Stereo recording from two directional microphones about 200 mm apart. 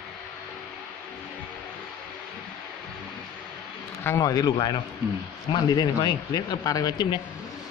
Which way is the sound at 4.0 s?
15° left (ahead or behind).